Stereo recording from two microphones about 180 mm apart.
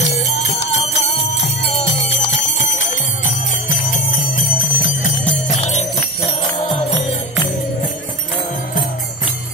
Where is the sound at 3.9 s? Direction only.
50° left (ahead or behind).